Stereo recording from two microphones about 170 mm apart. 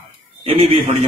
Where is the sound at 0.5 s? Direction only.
35° right (ahead or behind).